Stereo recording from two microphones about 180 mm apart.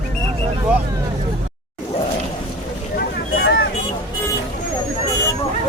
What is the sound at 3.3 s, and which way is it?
Vehicle, 65° left (ahead or behind).